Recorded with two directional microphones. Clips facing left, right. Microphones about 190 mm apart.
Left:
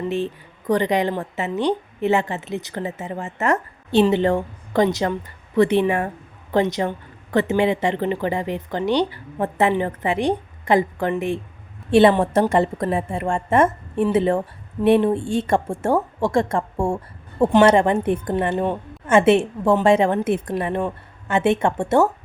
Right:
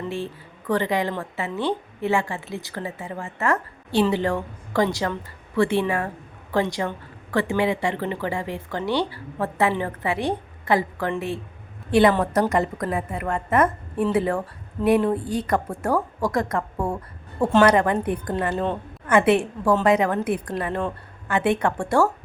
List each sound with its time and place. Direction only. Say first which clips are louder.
0.7 s a woman's voice: left 4 dB; 20° left (ahead or behind)